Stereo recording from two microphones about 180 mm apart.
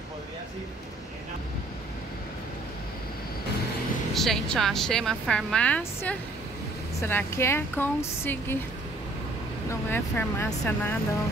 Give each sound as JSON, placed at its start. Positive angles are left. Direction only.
{"t": 4.1, "sound": "speech", "side_deg": 0}
{"t": 9.7, "sound": "speech", "side_deg": 10}